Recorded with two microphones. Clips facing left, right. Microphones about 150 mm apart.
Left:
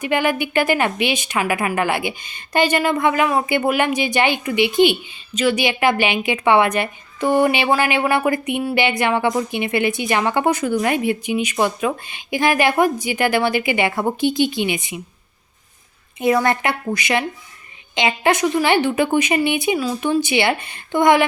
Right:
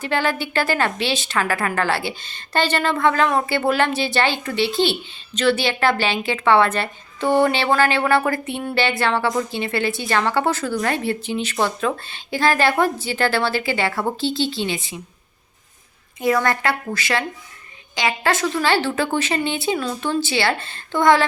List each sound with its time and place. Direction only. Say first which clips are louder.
0.0 s a woman's voice: left 3 dB; 15° left (ahead or behind)
16.2 s a woman's voice: left 2 dB; 20° left (ahead or behind)